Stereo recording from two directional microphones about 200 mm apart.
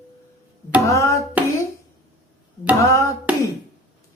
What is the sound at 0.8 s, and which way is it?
Music, 15° left (ahead or behind).